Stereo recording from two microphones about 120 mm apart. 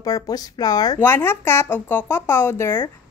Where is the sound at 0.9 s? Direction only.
20° left (ahead or behind).